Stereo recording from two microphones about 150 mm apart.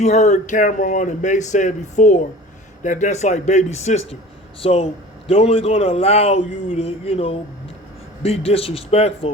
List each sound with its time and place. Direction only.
0.0 s a man's voice: 50° left (ahead or behind)